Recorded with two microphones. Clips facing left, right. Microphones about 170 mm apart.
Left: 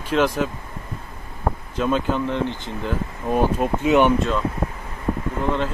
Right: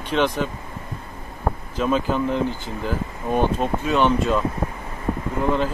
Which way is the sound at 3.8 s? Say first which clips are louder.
Left 4 dB; 15° left (ahead or behind).